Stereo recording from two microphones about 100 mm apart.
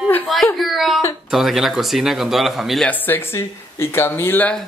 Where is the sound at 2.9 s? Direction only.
20° left (ahead or behind).